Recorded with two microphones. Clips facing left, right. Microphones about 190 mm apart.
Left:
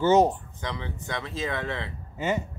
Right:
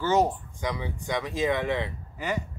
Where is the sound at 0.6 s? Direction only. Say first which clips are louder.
Right 3 dB; 10° right (ahead or behind).